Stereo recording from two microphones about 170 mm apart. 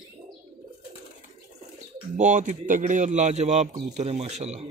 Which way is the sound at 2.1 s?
45° right (ahead or behind).